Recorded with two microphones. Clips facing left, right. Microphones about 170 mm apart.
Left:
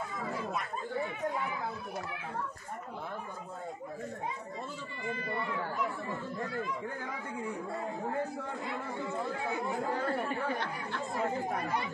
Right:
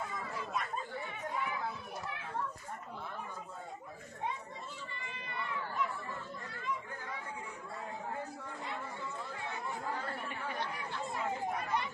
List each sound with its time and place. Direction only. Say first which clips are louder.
9.7 s chatter: left 6 dB; 45° left (ahead or behind)
11.1 s speech: left 4 dB; 40° left (ahead or behind)